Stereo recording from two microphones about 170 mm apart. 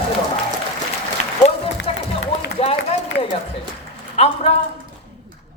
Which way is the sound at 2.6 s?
35° left (ahead or behind).